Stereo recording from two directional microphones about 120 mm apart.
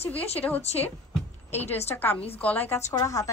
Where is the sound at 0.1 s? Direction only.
15° left (ahead or behind).